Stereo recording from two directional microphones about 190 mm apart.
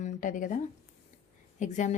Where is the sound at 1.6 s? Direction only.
40° left (ahead or behind).